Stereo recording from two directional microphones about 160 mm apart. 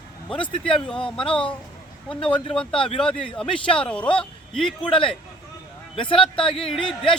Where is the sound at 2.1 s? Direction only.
35° left (ahead or behind).